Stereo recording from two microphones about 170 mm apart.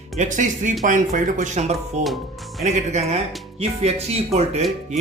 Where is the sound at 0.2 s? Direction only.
45° right (ahead or behind).